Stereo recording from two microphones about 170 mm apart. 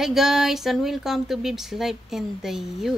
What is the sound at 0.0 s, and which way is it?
Speech, centre (ahead or behind).